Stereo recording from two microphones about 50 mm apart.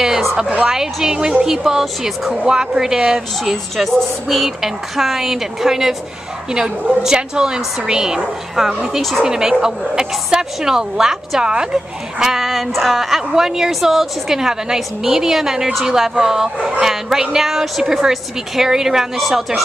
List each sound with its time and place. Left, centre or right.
0.0 s a sound: centre
0.7 s a woman's voice: centre
3.7 s a woman's voice: centre
7.0 s a woman's voice: centre
9.2 s a woman's voice: centre